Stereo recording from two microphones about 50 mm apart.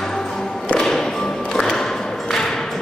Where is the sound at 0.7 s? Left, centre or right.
Centre.